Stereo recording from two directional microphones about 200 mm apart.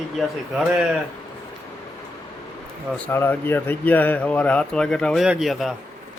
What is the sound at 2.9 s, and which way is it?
Speech, 10° left (ahead or behind).